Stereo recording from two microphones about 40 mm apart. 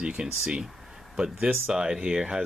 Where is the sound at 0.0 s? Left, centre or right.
Right.